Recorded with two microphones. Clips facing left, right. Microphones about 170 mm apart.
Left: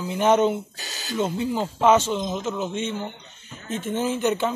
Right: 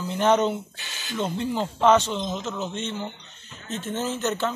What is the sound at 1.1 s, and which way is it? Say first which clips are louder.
Speech: left 2 dB; 10° left (ahead or behind).